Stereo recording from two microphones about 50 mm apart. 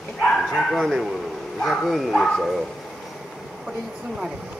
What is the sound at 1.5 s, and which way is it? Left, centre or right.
Speech, centre.